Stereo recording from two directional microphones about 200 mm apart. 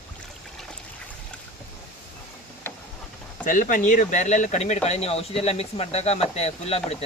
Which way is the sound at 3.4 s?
40° left (ahead or behind).